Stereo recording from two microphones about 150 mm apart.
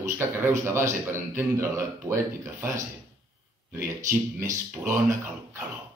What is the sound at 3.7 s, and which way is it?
A man's voice, 15° right (ahead or behind).